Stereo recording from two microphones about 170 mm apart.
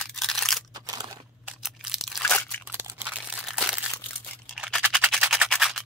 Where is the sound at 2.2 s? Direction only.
10° left (ahead or behind).